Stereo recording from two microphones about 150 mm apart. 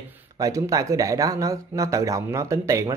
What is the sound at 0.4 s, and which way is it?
Speech, 20° right (ahead or behind).